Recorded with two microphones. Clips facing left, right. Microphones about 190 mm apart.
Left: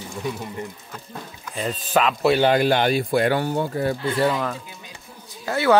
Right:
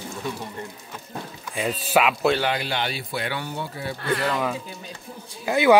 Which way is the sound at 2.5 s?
50° left (ahead or behind).